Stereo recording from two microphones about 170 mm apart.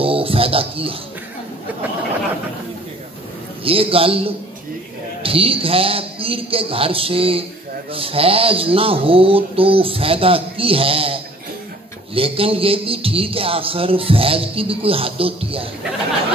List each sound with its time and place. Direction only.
0.0 s music: 35° right (ahead or behind)
3.6 s music: 35° right (ahead or behind)